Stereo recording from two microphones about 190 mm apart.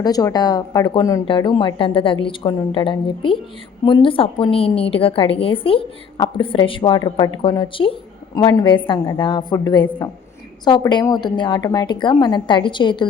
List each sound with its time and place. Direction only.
0.0 s a woman's voice: 20° left (ahead or behind)